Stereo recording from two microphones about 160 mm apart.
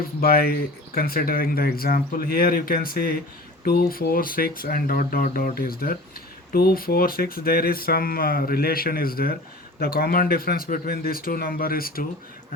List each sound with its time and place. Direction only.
0.2 s speech: 70° left (ahead or behind)